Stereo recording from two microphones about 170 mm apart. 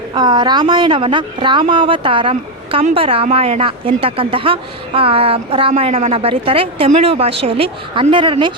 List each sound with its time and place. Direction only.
0.1 s a woman's voice: 25° right (ahead or behind)